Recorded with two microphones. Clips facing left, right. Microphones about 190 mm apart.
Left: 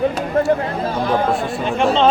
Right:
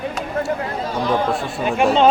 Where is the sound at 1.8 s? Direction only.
5° right (ahead or behind).